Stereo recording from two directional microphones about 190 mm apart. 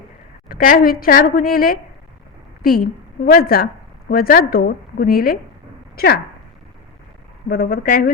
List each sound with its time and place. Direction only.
0.4 s a woman's voice: 50° left (ahead or behind)
7.4 s a woman's voice: 55° left (ahead or behind)